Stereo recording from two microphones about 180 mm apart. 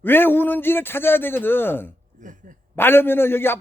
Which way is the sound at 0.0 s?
10° left (ahead or behind).